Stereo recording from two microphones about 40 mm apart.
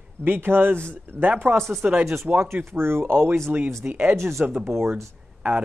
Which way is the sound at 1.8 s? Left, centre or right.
Right.